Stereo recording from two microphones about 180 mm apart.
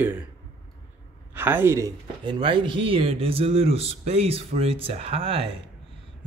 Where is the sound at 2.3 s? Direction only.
25° right (ahead or behind).